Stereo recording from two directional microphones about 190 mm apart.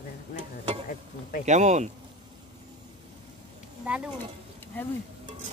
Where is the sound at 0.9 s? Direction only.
45° left (ahead or behind).